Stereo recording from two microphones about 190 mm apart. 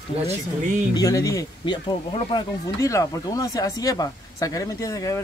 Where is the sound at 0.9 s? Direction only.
20° left (ahead or behind).